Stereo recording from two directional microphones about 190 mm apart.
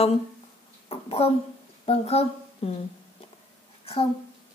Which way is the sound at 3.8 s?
30° left (ahead or behind).